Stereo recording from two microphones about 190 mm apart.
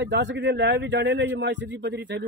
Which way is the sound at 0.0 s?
65° right (ahead or behind).